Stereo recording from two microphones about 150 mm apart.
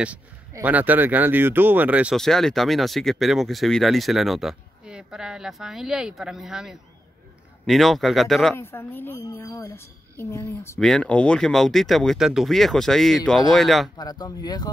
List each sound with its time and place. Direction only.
0.5 s speech: 15° right (ahead or behind)
2.1 s speech: 5° left (ahead or behind)
8.5 s speech: 15° left (ahead or behind)
10.8 s speech: 5° left (ahead or behind)
13.9 s speech: 25° left (ahead or behind)